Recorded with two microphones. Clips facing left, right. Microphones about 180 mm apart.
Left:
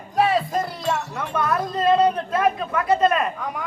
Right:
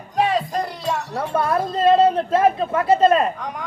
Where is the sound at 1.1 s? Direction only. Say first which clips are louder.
Right 3 dB; 30° right (ahead or behind).